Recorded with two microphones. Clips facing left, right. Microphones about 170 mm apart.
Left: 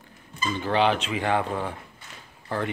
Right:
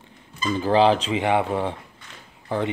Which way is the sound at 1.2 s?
20° right (ahead or behind).